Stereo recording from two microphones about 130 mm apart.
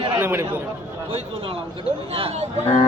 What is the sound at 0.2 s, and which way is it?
Speech, 15° right (ahead or behind).